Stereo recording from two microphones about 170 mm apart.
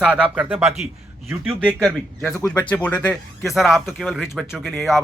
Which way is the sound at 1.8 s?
5° left (ahead or behind).